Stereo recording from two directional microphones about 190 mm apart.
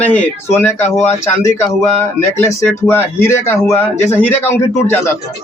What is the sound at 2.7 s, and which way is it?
Speech, 10° left (ahead or behind).